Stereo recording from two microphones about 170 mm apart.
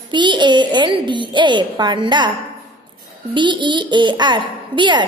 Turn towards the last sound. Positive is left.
turn(degrees=-30)  # may be behind; listen again after turning